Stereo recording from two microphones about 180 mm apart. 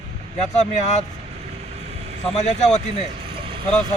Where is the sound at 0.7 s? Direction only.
40° left (ahead or behind).